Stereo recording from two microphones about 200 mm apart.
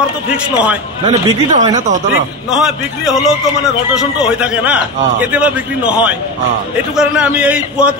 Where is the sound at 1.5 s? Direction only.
35° right (ahead or behind).